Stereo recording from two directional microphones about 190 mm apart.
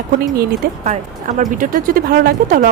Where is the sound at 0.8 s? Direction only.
40° right (ahead or behind).